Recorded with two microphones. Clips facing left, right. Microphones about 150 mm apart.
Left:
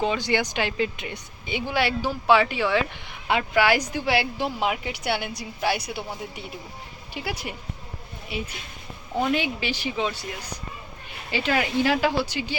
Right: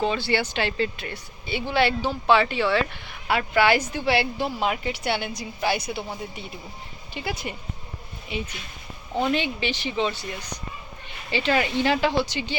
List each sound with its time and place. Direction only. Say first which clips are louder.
0.0 s speech: even; 15° left (ahead or behind)
11.3 s speech: right 1 dB; 10° left (ahead or behind)